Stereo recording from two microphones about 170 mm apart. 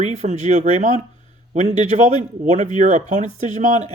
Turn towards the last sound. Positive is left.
turn(degrees=-45)  # may be behind; listen again after turning